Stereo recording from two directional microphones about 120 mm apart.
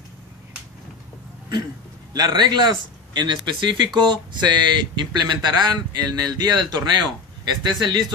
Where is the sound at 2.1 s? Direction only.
35° right (ahead or behind).